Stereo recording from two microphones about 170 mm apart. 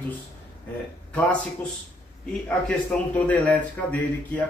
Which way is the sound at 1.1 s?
10° left (ahead or behind).